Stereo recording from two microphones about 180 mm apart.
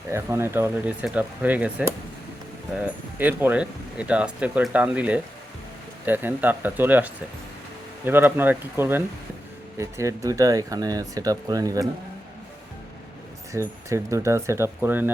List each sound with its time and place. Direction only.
0.1 s speech: 15° right (ahead or behind)
13.5 s speech: 15° right (ahead or behind)